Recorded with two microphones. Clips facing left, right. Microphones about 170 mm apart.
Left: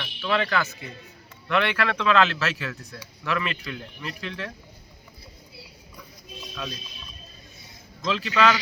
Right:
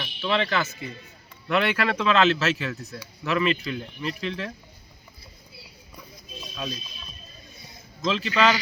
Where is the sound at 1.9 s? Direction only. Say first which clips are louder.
Right 1 dB; 5° right (ahead or behind).